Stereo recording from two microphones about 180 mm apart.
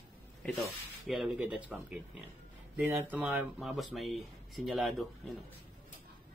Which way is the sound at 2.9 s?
10° right (ahead or behind).